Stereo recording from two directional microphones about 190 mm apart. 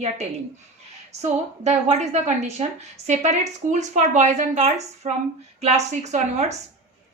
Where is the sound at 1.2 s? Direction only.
35° right (ahead or behind).